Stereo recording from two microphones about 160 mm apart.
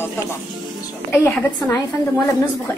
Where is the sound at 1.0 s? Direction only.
15° left (ahead or behind).